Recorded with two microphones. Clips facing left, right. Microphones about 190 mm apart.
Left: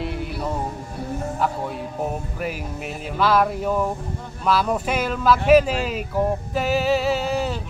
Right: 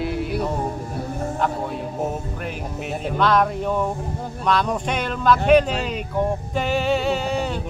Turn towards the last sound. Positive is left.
turn(degrees=0)  # may be behind; listen again after turning